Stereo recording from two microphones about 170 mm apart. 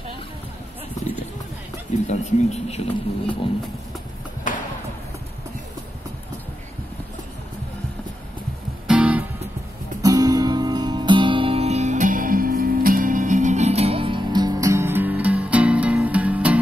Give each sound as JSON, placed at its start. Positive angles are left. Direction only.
{"t": 2.0, "sound": "speech", "side_deg": 40}
{"t": 4.5, "sound": "a sound", "side_deg": 50}
{"t": 8.8, "sound": "music", "side_deg": -5}
{"t": 10.0, "sound": "music", "side_deg": -20}